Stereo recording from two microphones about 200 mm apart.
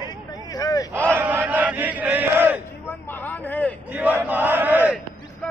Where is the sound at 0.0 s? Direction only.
20° left (ahead or behind).